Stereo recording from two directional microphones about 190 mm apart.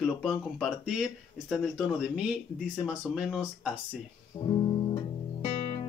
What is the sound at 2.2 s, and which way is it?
Speech, centre (ahead or behind).